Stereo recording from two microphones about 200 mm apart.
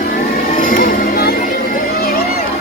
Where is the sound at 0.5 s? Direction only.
45° left (ahead or behind).